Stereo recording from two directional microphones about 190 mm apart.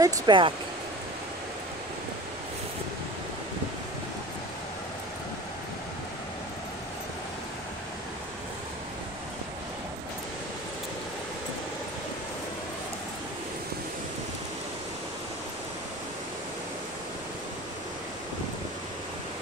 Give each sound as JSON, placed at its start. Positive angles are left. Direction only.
{"t": 0.0, "sound": "speech", "side_deg": -25}